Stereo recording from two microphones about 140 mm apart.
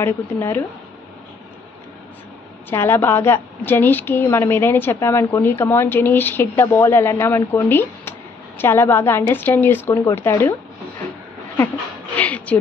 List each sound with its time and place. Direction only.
0.0 s a woman's voice: 15° left (ahead or behind)
2.7 s a woman's voice: 15° left (ahead or behind)
12.2 s a sound: 10° left (ahead or behind)